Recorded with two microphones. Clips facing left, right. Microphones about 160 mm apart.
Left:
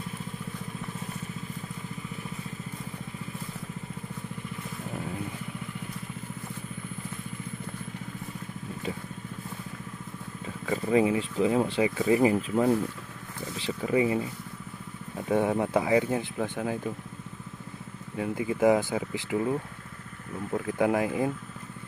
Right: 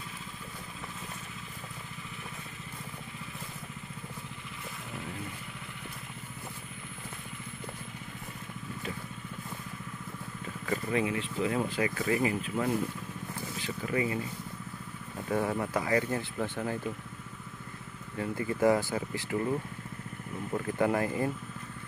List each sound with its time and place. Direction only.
10.9 s speech: 25° left (ahead or behind)
15.2 s speech: 20° left (ahead or behind)
18.1 s speech: 10° left (ahead or behind)